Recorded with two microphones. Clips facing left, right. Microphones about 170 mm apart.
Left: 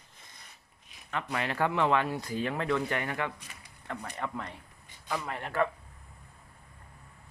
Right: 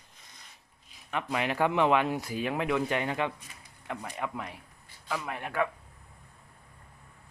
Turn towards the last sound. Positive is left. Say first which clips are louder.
# left 1 dB
turn(degrees=-10)  # may be behind; listen again after turning